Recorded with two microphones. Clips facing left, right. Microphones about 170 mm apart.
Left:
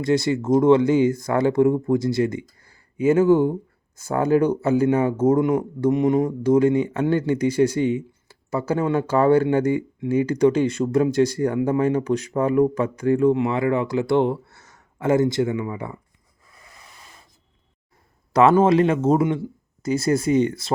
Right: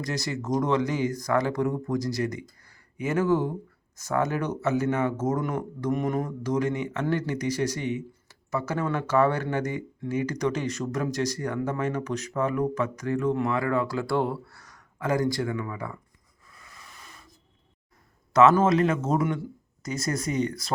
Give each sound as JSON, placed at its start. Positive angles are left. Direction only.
{"t": 0.0, "sound": "speech", "side_deg": 25}
{"t": 2.6, "sound": "a sound", "side_deg": 30}
{"t": 3.9, "sound": "speech", "side_deg": 30}
{"t": 18.3, "sound": "speech", "side_deg": 30}